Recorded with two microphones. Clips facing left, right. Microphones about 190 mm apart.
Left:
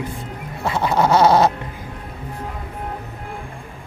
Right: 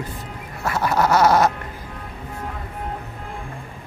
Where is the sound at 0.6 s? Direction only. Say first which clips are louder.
Left 2 dB; 20° left (ahead or behind).